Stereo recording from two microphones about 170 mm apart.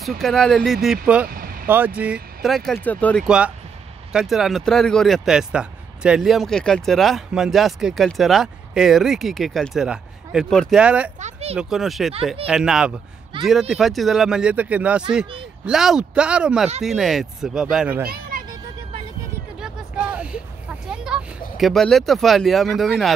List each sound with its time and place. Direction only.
0.0 s speech: centre (ahead or behind)
1.2 s vehicle: 60° right (ahead or behind)
1.7 s speech: 10° right (ahead or behind); by 3.3 s 10° left (ahead or behind)
3.3 s speech: 5° right (ahead or behind)
11.1 s a sound: 45° right (ahead or behind)
11.5 s speech: centre (ahead or behind)
18.0 s a sound: 60° right (ahead or behind)
19.6 s a sound: 5° right (ahead or behind)
20.9 s speech: 5° right (ahead or behind)